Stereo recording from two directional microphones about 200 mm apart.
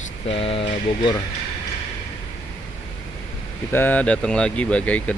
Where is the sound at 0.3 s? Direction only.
30° left (ahead or behind).